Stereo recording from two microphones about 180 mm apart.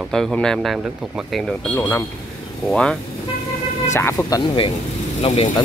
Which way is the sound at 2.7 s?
5° left (ahead or behind).